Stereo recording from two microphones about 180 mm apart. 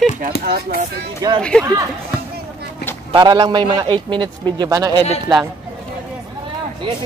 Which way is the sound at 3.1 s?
25° right (ahead or behind).